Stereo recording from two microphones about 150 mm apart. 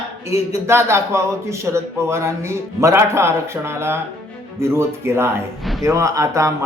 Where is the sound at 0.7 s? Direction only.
15° right (ahead or behind).